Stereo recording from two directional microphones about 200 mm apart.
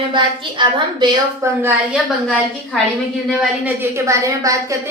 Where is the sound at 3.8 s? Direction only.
15° right (ahead or behind).